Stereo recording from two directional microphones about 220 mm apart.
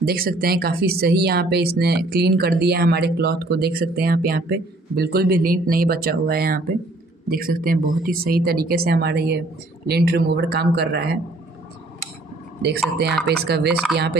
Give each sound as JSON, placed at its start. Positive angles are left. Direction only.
{"t": 0.0, "sound": "speech", "side_deg": -40}
{"t": 12.6, "sound": "speech", "side_deg": -50}